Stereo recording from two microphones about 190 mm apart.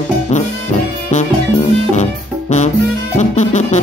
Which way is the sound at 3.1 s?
40° left (ahead or behind).